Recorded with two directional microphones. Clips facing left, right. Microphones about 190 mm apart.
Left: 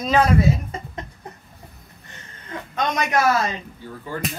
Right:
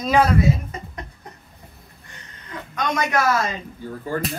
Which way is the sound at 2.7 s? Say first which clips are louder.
Even; 20° left (ahead or behind).